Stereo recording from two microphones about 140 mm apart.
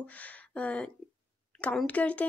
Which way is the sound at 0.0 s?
10° left (ahead or behind).